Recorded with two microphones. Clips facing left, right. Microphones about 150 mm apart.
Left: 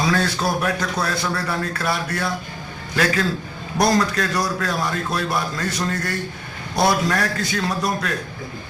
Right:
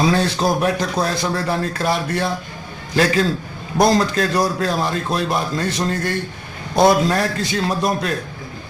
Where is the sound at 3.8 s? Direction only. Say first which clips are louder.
Right 3 dB; 25° right (ahead or behind).